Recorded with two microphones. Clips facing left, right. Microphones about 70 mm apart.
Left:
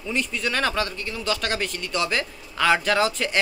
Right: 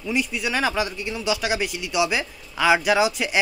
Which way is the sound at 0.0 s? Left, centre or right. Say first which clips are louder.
Right 2 dB; centre.